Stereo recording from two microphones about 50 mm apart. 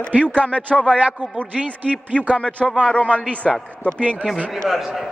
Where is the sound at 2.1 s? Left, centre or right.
Left.